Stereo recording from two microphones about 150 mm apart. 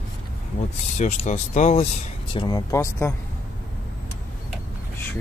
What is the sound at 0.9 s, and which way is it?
Speech, 50° left (ahead or behind).